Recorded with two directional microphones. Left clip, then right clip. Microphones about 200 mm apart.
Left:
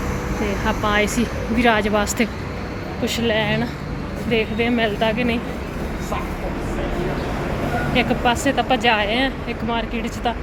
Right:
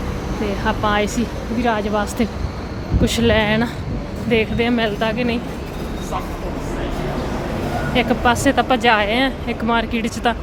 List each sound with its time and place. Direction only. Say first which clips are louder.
0.4 s speech: right 2 dB; 5° right (ahead or behind)
3.0 s speech: right 4 dB; 20° right (ahead or behind)
7.9 s speech: right 3 dB; 15° right (ahead or behind)